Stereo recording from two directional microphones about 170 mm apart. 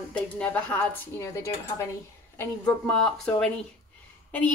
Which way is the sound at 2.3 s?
5° left (ahead or behind).